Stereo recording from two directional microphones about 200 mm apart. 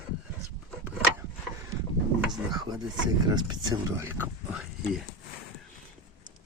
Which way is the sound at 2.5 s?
20° right (ahead or behind).